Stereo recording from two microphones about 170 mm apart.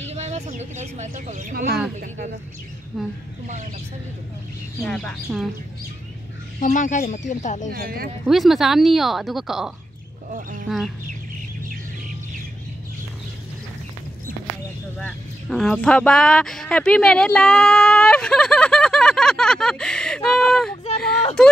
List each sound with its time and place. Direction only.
0.1 s a sound: 40° right (ahead or behind)
1.5 s speech: 60° right (ahead or behind)
2.0 s speech: 45° right (ahead or behind)
2.9 s speech: centre (ahead or behind)
4.8 s speech: 5° left (ahead or behind)
6.6 s speech: 50° left (ahead or behind)
7.7 s speech: 60° right (ahead or behind)
8.3 s speech: centre (ahead or behind)
15.0 s speech: 5° left (ahead or behind)